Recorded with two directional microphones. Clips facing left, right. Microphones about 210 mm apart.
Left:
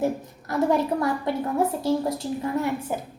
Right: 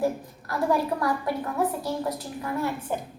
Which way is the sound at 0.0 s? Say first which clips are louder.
Left 1 dB; 20° left (ahead or behind).